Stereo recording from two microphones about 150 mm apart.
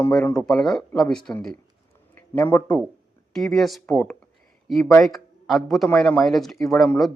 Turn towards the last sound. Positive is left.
turn(degrees=0)  # may be behind; listen again after turning